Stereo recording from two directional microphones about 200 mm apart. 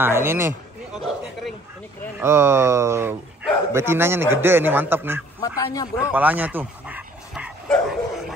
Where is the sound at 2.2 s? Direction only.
10° right (ahead or behind).